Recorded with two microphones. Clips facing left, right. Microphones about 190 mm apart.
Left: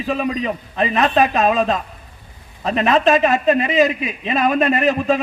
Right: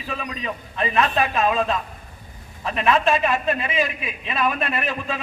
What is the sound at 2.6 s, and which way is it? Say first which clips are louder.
A man's voice: left 4 dB; 40° left (ahead or behind).